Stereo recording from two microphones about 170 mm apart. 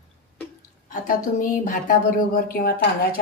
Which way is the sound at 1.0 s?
50° left (ahead or behind).